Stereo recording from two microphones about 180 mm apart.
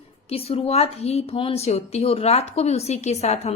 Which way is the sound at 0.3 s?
35° left (ahead or behind).